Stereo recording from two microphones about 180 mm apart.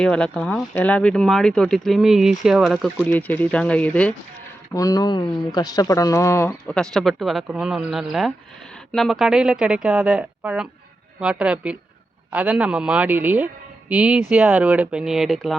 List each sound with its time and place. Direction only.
0.0 s speech: 5° left (ahead or behind)
4.7 s speech: 20° left (ahead or behind); by 15.5 s centre (ahead or behind)